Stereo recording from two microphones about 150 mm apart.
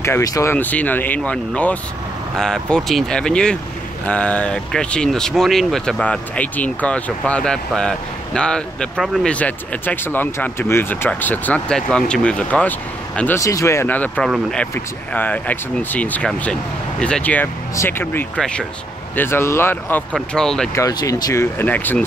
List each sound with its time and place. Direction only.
0.0 s speech: 20° left (ahead or behind)
13.4 s speech: 20° left (ahead or behind); by 20.7 s 5° left (ahead or behind)
20.7 s speech: 20° left (ahead or behind)